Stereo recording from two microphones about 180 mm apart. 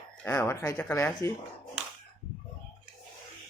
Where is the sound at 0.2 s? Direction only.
10° left (ahead or behind).